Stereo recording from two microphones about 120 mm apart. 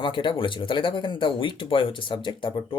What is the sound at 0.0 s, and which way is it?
Speech, 40° left (ahead or behind).